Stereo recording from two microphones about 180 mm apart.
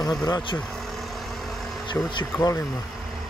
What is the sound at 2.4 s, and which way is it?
Speech, 15° left (ahead or behind).